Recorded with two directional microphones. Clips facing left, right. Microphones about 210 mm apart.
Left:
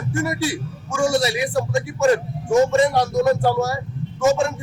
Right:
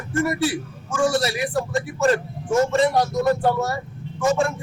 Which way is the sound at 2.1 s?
15° left (ahead or behind).